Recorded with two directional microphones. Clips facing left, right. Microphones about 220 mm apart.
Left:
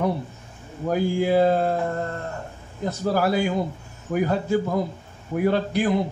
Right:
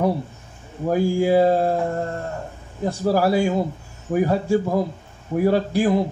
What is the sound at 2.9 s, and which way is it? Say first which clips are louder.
Speech: right 3 dB; 30° right (ahead or behind).